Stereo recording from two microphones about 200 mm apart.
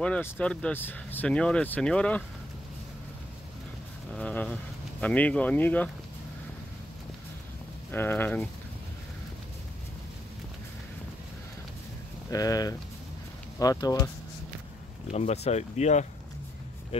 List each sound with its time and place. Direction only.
0.0 s speech: 5° left (ahead or behind)
4.1 s a sound: 5° left (ahead or behind)
5.0 s speech: 5° left (ahead or behind)
7.9 s speech: 10° left (ahead or behind)
12.3 s speech: 20° left (ahead or behind)
15.0 s speech: 35° left (ahead or behind)